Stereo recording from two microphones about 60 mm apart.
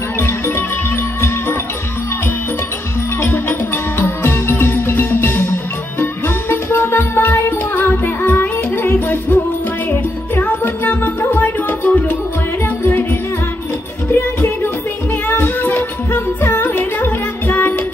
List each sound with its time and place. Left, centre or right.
3.2 s music: left
14.1 s music: left